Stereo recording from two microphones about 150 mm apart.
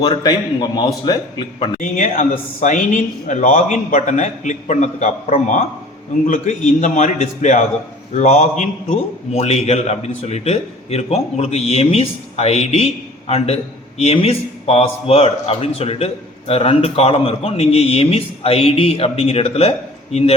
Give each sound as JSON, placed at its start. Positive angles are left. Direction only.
{"t": 0.0, "sound": "a man's voice", "side_deg": 25}
{"t": 1.8, "sound": "a man's voice", "side_deg": 60}